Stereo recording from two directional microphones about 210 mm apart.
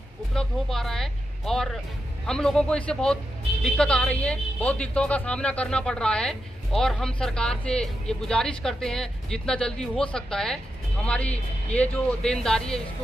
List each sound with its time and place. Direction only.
0.3 s speech: centre (ahead or behind)